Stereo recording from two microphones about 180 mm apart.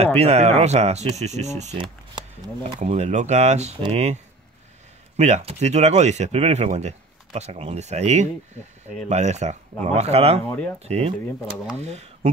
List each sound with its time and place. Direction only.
0.2 s speech: 35° right (ahead or behind)
1.8 s a sound: 25° right (ahead or behind)
2.8 s speech: 40° right (ahead or behind)
10.4 s speech: 10° left (ahead or behind)
10.8 s speech: 35° right (ahead or behind)